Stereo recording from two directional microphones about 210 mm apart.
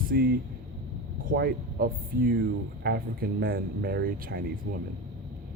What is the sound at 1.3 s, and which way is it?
Speech, 45° right (ahead or behind).